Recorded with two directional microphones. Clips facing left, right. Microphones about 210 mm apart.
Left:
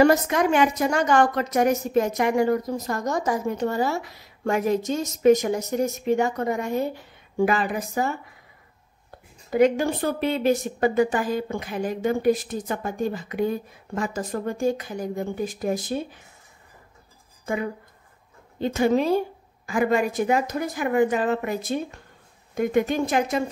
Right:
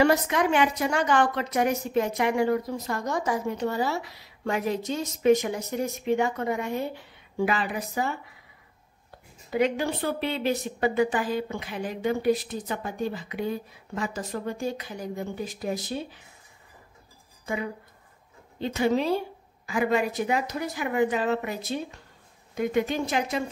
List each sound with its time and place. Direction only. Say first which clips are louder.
0.0 s a woman's voice: left 4 dB; 45° left (ahead or behind)
9.5 s a woman's voice: left 5 dB; 45° left (ahead or behind)
18.6 s a woman's voice: left 4 dB; 50° left (ahead or behind)